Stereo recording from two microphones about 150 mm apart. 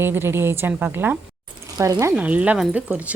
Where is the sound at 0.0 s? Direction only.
15° right (ahead or behind).